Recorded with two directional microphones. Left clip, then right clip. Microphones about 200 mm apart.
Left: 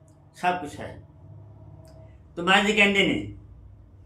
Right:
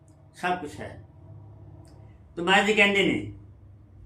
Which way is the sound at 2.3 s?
15° left (ahead or behind).